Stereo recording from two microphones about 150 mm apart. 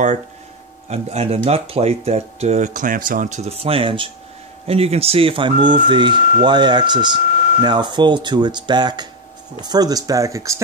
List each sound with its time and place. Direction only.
0.8 s speech: 45° right (ahead or behind); by 10.6 s 20° right (ahead or behind)